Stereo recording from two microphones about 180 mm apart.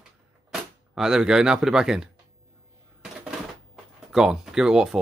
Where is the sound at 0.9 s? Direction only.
5° right (ahead or behind).